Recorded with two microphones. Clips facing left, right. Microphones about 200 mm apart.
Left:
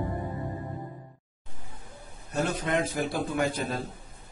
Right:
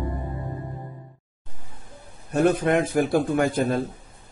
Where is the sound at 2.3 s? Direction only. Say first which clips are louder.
Right 8 dB; 60° right (ahead or behind).